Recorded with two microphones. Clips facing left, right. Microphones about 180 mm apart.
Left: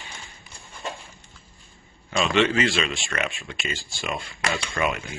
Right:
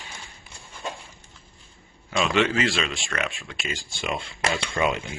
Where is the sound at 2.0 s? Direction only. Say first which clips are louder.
Left 1 dB; 5° right (ahead or behind).